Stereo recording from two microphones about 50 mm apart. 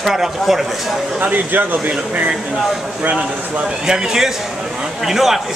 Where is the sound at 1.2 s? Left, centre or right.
Right.